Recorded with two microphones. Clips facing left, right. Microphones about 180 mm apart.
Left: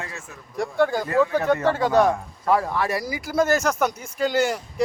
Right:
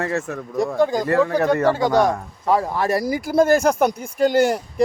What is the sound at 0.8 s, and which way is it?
Speech, 15° right (ahead or behind).